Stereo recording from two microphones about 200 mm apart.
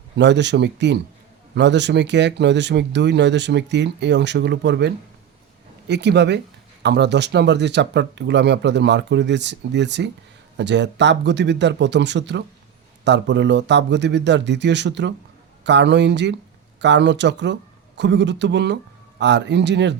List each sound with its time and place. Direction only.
0.2 s speech: 60° right (ahead or behind)
5.9 s speech: 60° right (ahead or behind)